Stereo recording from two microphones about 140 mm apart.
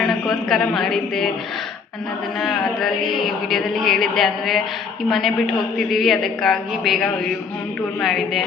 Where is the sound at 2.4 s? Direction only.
Centre (ahead or behind).